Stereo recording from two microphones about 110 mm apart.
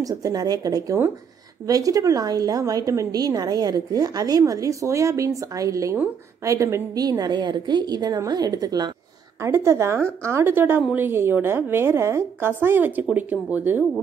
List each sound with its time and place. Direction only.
0.0 s a woman's voice: 30° right (ahead or behind)
9.4 s a woman's voice: 25° right (ahead or behind)